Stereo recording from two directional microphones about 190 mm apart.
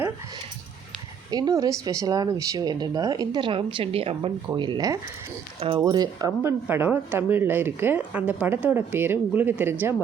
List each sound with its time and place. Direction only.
1.3 s speech: 20° right (ahead or behind)